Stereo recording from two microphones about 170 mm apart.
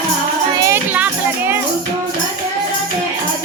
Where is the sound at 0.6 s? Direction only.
10° right (ahead or behind).